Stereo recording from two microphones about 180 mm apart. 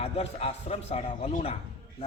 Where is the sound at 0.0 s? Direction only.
35° left (ahead or behind).